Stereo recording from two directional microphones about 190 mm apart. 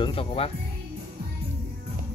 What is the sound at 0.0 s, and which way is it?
Speech, 30° left (ahead or behind).